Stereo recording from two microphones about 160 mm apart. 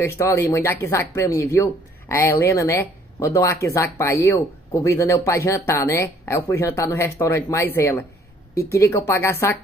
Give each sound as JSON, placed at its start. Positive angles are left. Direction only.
{"t": 0.0, "sound": "speech", "side_deg": 20}